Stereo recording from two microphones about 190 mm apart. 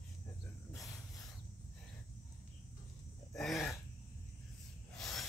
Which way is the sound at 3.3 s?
Centre (ahead or behind).